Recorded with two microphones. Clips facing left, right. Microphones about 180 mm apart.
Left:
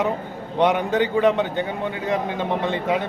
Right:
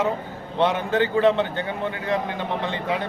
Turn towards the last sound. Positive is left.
turn(degrees=20)  # may be behind; listen again after turning